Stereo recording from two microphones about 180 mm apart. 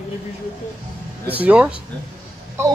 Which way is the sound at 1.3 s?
10° right (ahead or behind).